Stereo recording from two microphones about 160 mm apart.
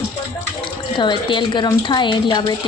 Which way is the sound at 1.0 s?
30° left (ahead or behind).